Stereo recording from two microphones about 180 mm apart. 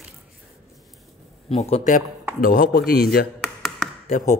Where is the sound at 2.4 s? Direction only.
50° left (ahead or behind).